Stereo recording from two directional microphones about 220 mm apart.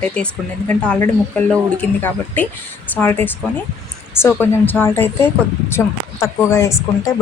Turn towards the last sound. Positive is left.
turn(degrees=15)  # may be behind; listen again after turning